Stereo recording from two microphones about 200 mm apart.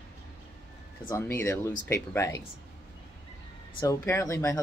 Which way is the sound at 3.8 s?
15° left (ahead or behind).